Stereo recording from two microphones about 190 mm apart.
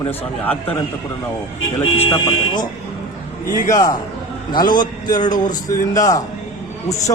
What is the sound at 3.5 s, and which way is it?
Speech, 45° left (ahead or behind).